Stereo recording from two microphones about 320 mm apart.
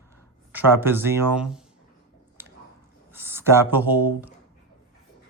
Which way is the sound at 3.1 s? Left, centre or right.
Centre.